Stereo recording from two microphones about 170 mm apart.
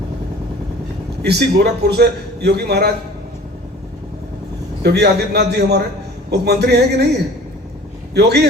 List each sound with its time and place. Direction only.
1.2 s a man's voice: 80° right
4.8 s a man's voice: 75° right (ahead or behind)
8.1 s speech: 80° right